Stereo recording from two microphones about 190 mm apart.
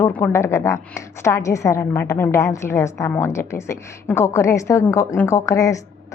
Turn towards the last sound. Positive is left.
turn(degrees=15)  # may be behind; listen again after turning